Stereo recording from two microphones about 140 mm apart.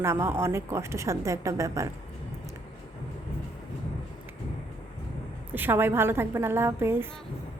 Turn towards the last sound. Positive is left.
turn(degrees=-15)  # may be behind; listen again after turning